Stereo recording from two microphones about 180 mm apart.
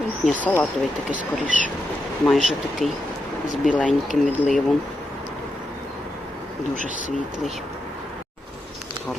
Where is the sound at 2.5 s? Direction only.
Centre (ahead or behind).